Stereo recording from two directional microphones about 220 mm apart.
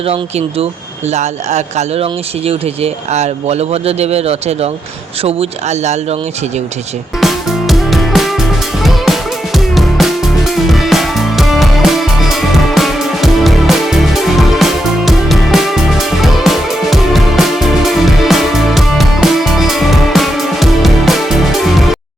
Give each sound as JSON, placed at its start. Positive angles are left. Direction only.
{"t": 0.0, "sound": "speech", "side_deg": -25}
{"t": 7.2, "sound": "music", "side_deg": 0}